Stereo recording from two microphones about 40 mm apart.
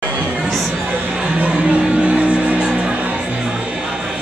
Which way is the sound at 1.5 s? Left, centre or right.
Right.